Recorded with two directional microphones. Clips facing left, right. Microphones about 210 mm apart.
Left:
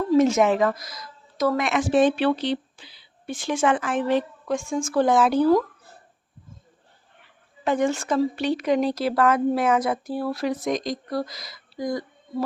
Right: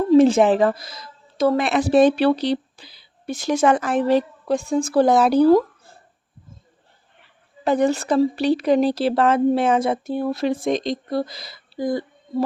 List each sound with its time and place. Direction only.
0.1 s a woman's voice: 30° right (ahead or behind)
7.6 s speech: 35° right (ahead or behind)